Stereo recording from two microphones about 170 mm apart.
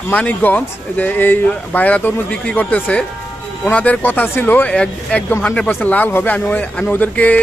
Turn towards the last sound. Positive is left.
turn(degrees=10)  # may be behind; listen again after turning